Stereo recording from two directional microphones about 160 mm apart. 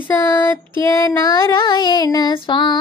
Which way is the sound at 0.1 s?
15° left (ahead or behind).